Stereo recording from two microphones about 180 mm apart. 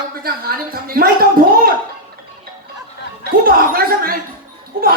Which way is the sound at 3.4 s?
55° right (ahead or behind).